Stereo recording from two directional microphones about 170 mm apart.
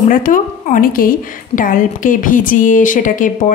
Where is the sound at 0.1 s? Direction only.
50° left (ahead or behind).